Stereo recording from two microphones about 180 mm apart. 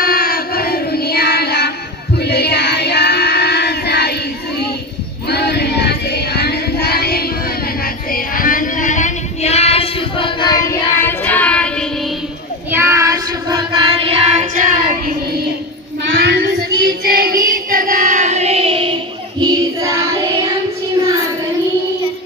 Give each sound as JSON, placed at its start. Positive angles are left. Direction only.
{"t": 0.0, "sound": "music", "side_deg": 55}
{"t": 2.1, "sound": "child singing", "side_deg": 65}
{"t": 5.3, "sound": "music", "side_deg": 65}
{"t": 7.8, "sound": "child singing", "side_deg": 50}
{"t": 12.7, "sound": "child singing", "side_deg": -15}
{"t": 16.1, "sound": "child singing", "side_deg": -65}